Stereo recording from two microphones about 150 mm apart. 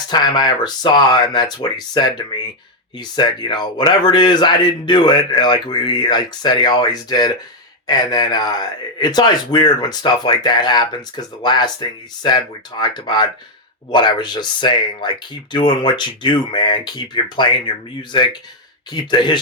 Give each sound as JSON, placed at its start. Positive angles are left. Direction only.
{"t": 0.1, "sound": "speech", "side_deg": 30}